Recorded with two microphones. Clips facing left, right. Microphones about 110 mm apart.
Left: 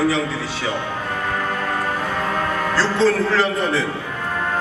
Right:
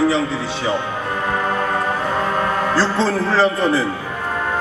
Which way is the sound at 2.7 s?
30° right (ahead or behind).